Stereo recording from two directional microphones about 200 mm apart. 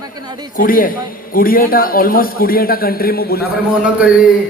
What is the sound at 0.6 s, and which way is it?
A man's voice, 45° left (ahead or behind).